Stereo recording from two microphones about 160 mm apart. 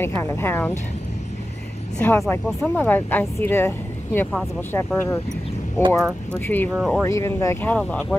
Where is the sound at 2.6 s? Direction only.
10° left (ahead or behind).